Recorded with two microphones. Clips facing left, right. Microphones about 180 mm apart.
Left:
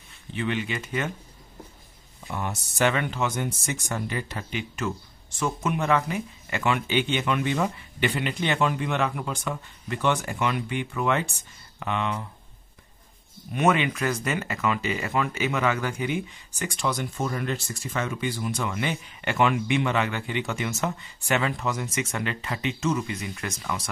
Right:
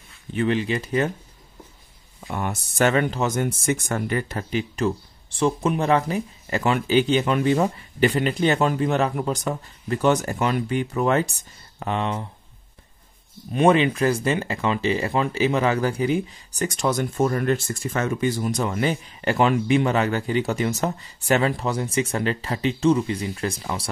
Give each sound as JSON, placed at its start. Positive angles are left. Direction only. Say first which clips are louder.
{"t": 0.3, "sound": "speech", "louder": "right 6 dB", "side_deg": -45}
{"t": 0.6, "sound": "speech", "louder": "right 6 dB", "side_deg": -35}
{"t": 2.2, "sound": "speech", "louder": "right 4 dB", "side_deg": -55}
{"t": 2.9, "sound": "speech", "louder": "right 5 dB", "side_deg": -40}
{"t": 13.5, "sound": "speech", "louder": "right 5 dB", "side_deg": -30}